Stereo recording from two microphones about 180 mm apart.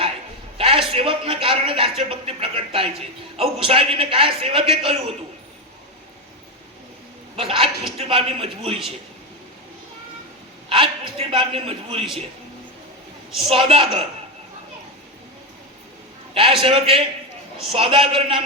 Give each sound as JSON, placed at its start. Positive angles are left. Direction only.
{"t": 0.5, "sound": "a sound", "side_deg": -30}
{"t": 0.9, "sound": "a man's voice", "side_deg": -30}
{"t": 7.3, "sound": "a man's voice", "side_deg": -30}
{"t": 10.7, "sound": "a man's voice", "side_deg": -30}
{"t": 13.5, "sound": "a man's voice", "side_deg": -30}
{"t": 16.3, "sound": "a man's voice", "side_deg": -30}